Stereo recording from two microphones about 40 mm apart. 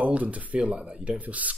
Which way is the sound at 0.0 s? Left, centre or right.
Right.